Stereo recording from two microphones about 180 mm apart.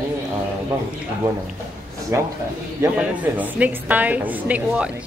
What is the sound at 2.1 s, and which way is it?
Speech, 15° right (ahead or behind).